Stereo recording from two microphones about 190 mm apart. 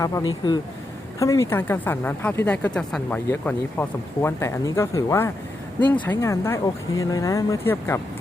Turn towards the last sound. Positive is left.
turn(degrees=10)  # may be behind; listen again after turning